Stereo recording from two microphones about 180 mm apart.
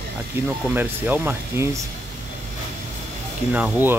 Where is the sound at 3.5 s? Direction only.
10° right (ahead or behind).